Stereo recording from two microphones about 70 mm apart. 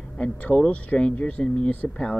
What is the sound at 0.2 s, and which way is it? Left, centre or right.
Speech, centre.